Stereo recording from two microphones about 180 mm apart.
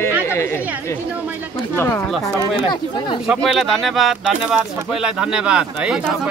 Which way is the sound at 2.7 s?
30° left (ahead or behind).